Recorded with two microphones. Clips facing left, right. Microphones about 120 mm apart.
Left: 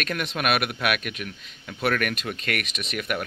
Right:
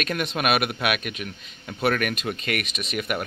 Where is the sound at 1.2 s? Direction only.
20° right (ahead or behind).